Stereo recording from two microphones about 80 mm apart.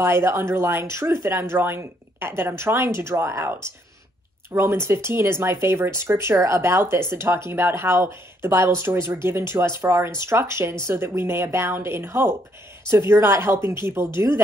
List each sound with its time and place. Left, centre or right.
0.0 s speech: right
4.6 s speech: right